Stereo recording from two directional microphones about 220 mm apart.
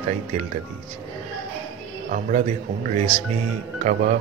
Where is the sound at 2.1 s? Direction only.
35° right (ahead or behind).